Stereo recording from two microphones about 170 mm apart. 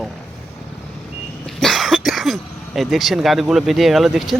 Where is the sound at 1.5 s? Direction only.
Centre (ahead or behind).